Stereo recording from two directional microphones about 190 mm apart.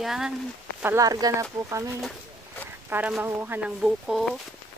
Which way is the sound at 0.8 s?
15° right (ahead or behind).